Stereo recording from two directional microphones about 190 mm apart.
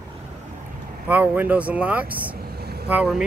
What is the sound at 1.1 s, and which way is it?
Speech, 10° right (ahead or behind).